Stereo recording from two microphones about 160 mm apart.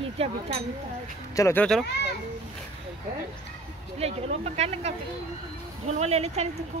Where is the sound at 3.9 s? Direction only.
40° right (ahead or behind).